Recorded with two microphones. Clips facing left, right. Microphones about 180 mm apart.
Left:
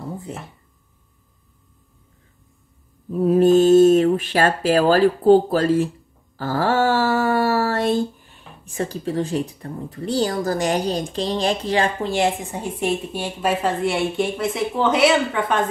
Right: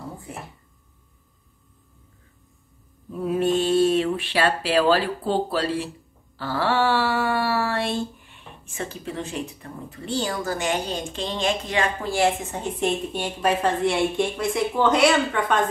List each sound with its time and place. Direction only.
3.1 s speech: 40° left (ahead or behind); by 15.5 s 5° left (ahead or behind)